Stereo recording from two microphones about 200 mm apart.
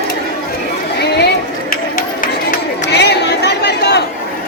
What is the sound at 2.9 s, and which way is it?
Chatter, 55° left (ahead or behind).